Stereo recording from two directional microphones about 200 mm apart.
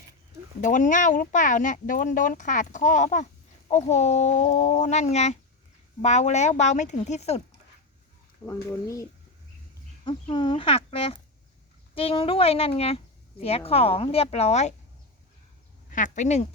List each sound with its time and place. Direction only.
0.6 s speech: 40° left (ahead or behind)
8.4 s speech: 20° left (ahead or behind)
10.1 s speech: 25° left (ahead or behind)
15.9 s speech: 40° left (ahead or behind)